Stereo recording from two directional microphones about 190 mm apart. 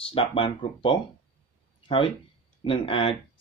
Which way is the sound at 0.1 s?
30° left (ahead or behind).